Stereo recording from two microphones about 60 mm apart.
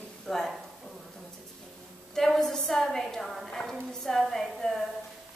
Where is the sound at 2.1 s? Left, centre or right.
Centre.